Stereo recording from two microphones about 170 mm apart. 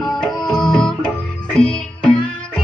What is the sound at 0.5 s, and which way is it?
Music, centre (ahead or behind).